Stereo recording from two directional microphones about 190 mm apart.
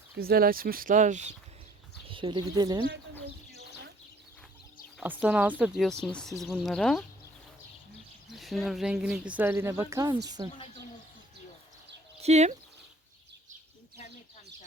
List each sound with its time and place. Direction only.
0.2 s speech: 50° right (ahead or behind)
2.0 s speech: 30° right (ahead or behind)
4.9 s speech: 5° right (ahead or behind)
8.3 s speech: centre (ahead or behind); by 10.5 s 20° right (ahead or behind)
12.2 s speech: 35° right (ahead or behind)